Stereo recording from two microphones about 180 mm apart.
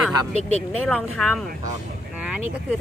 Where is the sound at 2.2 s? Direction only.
5° right (ahead or behind).